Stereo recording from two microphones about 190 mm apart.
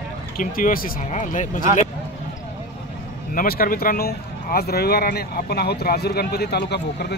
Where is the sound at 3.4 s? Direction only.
50° left (ahead or behind).